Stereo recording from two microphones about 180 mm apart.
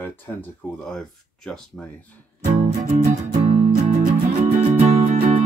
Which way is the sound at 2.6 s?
40° right (ahead or behind).